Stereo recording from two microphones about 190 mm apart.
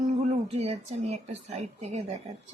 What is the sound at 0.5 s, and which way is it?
A woman's voice, 35° right (ahead or behind).